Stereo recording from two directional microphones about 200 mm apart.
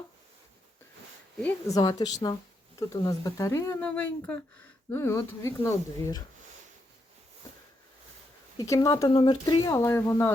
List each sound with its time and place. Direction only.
1.4 s speech: 10° left (ahead or behind)
8.5 s speech: 15° left (ahead or behind)